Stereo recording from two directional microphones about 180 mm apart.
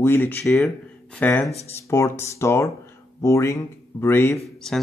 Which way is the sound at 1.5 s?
35° left (ahead or behind).